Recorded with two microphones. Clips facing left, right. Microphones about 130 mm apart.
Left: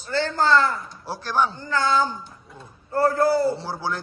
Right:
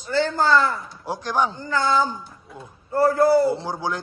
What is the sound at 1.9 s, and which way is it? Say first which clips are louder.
Speech: right 1 dB; 5° right (ahead or behind).